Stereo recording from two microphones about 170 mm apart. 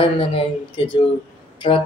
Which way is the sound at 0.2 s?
30° left (ahead or behind).